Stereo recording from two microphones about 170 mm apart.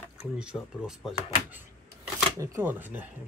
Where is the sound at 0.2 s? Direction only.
5° right (ahead or behind).